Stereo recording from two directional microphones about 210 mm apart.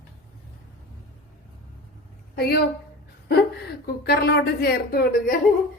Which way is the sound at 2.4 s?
50° left (ahead or behind).